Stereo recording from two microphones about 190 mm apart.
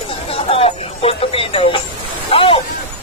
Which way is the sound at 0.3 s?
30° left (ahead or behind).